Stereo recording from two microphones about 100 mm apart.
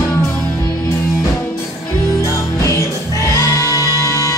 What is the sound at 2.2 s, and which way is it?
Music, 35° left (ahead or behind).